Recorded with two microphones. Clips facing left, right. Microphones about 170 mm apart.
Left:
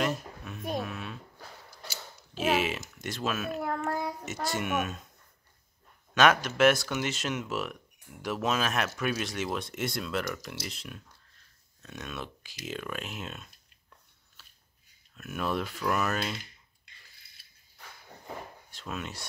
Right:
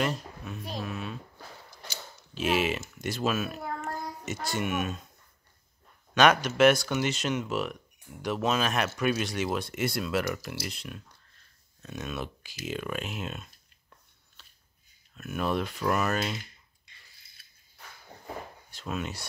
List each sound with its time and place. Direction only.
0.0 s babbling: centre (ahead or behind)
0.8 s a sound: centre (ahead or behind)
3.0 s speech: centre (ahead or behind)
3.6 s child singing: 60° left (ahead or behind)
4.3 s speech: centre (ahead or behind)
6.1 s speech: centre (ahead or behind)
14.4 s scissors: 5° left (ahead or behind)
15.1 s speech: centre (ahead or behind)
18.7 s speech: centre (ahead or behind)